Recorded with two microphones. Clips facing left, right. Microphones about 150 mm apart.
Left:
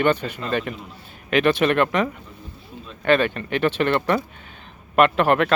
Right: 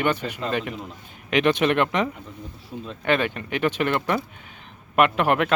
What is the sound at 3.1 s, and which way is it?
Speech, 15° right (ahead or behind).